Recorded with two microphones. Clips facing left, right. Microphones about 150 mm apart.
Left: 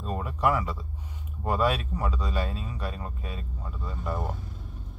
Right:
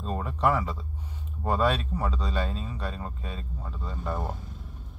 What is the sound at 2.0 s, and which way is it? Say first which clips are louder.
A man's voice: even; 30° right (ahead or behind).